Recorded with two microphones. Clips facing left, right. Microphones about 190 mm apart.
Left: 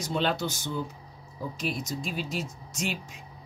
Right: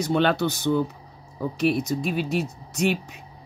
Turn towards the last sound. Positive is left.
turn(degrees=-65)  # may be behind; listen again after turning